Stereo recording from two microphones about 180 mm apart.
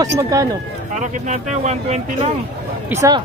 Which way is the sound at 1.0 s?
40° right (ahead or behind).